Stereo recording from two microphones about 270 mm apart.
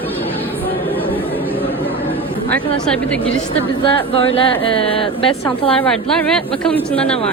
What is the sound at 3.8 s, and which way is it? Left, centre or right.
Speech, left.